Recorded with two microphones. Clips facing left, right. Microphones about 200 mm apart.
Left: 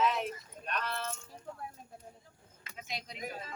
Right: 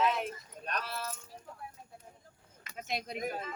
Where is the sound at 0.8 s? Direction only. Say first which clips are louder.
Left 2 dB; 5° right (ahead or behind).